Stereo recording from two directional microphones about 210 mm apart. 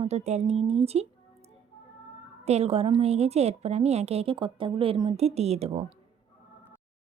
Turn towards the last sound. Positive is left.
turn(degrees=-30)  # may be behind; listen again after turning